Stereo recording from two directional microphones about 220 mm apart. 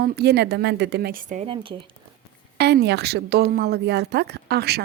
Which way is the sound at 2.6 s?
50° right (ahead or behind).